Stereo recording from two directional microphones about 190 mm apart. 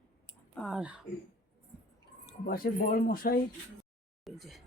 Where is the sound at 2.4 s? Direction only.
50° left (ahead or behind).